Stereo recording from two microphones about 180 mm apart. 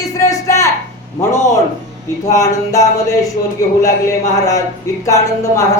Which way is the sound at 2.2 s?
20° left (ahead or behind).